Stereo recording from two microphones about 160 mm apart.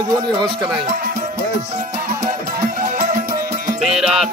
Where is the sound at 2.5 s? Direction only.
60° right (ahead or behind).